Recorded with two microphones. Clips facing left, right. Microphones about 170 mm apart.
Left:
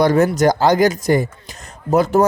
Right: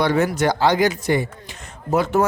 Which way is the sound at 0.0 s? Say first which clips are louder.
Left 5 dB; 40° left (ahead or behind).